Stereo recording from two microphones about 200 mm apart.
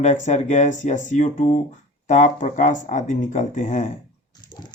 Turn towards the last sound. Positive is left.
turn(degrees=20)  # may be behind; listen again after turning